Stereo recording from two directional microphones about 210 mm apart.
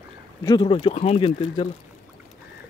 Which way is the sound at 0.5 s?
25° left (ahead or behind).